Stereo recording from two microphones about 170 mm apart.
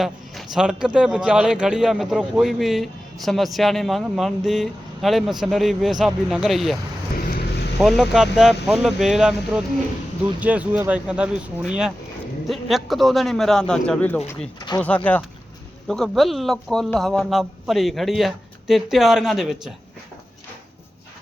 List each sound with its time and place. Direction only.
0.0 s speech: centre (ahead or behind)
7.2 s vehicle: 60° left (ahead or behind)
7.8 s speech: centre (ahead or behind)